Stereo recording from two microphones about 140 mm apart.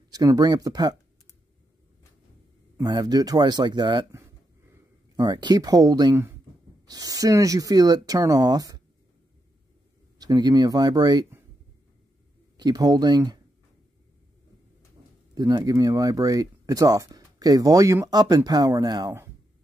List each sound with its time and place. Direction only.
0.1 s speech: 25° right (ahead or behind)
2.8 s speech: 30° right (ahead or behind)
4.1 s a sound: 20° right (ahead or behind)
6.9 s speech: 25° right (ahead or behind)
10.1 s speech: 30° right (ahead or behind)
12.5 s speech: 25° right (ahead or behind)
15.3 s speech: 30° right (ahead or behind)